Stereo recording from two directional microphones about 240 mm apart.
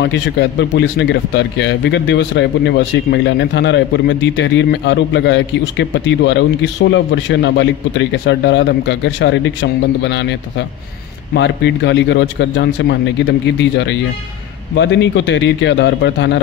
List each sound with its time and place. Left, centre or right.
0.0 s speech: left
11.3 s speech: left